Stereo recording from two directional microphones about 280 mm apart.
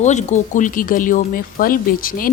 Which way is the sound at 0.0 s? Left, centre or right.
Left.